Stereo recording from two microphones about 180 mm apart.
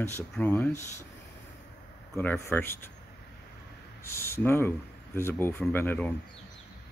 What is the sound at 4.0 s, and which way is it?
Speech, 15° left (ahead or behind).